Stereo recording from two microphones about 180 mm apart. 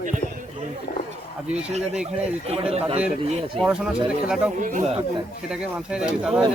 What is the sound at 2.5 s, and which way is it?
Speech, 35° right (ahead or behind).